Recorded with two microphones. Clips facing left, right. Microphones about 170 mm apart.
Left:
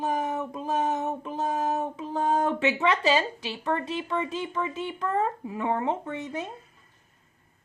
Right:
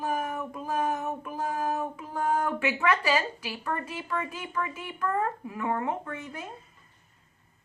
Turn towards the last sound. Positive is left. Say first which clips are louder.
# left 5 dB
turn(degrees=20)  # may be behind; listen again after turning